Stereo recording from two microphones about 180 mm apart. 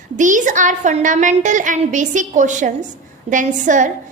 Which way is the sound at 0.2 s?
45° right (ahead or behind).